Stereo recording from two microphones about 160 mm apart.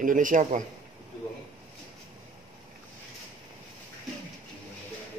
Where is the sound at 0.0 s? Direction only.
55° right (ahead or behind).